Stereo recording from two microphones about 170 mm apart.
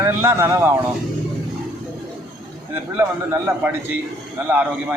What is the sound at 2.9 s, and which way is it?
A man's voice, 15° right (ahead or behind).